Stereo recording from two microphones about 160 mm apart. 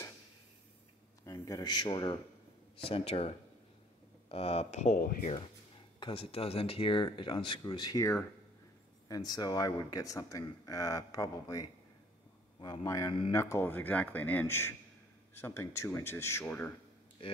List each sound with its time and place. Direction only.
1.2 s speech: 20° left (ahead or behind)
2.9 s speech: 40° left (ahead or behind)
5.9 s speech: 35° left (ahead or behind); by 16.7 s 10° left (ahead or behind)
17.2 s speech: 35° left (ahead or behind)